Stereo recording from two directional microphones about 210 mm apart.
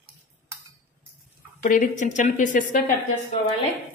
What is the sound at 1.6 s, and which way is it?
Speech, 40° left (ahead or behind).